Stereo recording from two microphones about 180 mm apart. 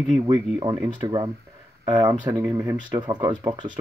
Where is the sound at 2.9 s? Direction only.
25° right (ahead or behind).